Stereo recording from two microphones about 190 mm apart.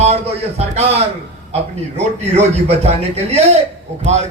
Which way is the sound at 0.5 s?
35° right (ahead or behind).